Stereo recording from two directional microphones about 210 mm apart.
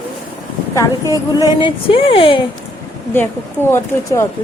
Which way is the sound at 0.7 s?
20° left (ahead or behind).